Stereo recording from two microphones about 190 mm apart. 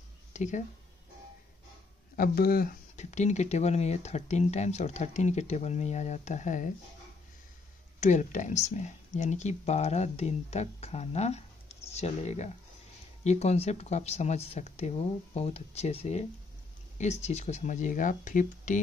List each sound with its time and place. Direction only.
0.3 s a sound: 40° left (ahead or behind)
2.1 s speech: 50° left (ahead or behind)
8.0 s speech: 40° left (ahead or behind)